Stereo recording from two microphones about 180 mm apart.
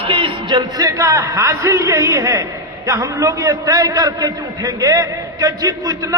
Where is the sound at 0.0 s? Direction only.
30° right (ahead or behind).